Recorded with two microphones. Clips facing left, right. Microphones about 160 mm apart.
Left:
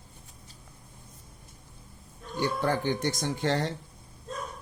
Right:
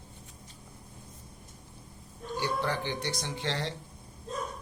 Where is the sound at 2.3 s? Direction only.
50° left (ahead or behind).